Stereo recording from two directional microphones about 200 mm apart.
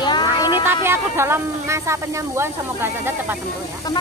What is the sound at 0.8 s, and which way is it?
Speech, 10° right (ahead or behind).